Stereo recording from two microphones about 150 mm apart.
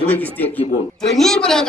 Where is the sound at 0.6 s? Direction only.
45° left (ahead or behind).